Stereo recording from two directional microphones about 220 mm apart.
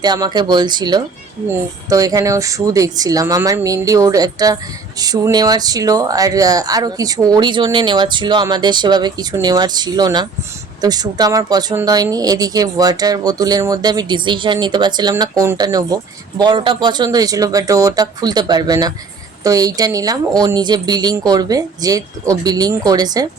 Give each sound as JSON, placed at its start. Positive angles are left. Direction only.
{"t": 0.0, "sound": "speech", "side_deg": -20}